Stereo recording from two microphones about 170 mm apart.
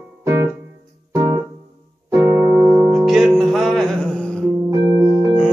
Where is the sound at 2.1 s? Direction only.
10° right (ahead or behind); by 4.5 s 5° left (ahead or behind).